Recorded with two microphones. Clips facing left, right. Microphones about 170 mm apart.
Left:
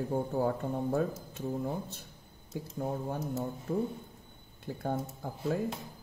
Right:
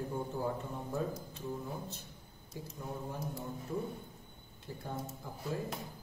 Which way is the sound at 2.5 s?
60° left (ahead or behind).